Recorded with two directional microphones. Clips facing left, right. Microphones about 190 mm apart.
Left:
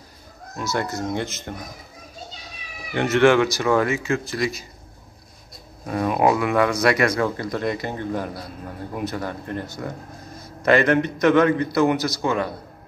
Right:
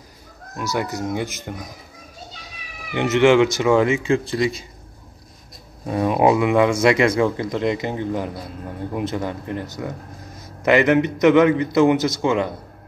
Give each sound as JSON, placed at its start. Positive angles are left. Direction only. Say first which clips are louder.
{"t": 0.6, "sound": "speech", "louder": "right 1 dB", "side_deg": -10}
{"t": 2.9, "sound": "a man's voice", "louder": "right 1 dB", "side_deg": -15}
{"t": 5.9, "sound": "a man's voice", "louder": "right 3 dB", "side_deg": -20}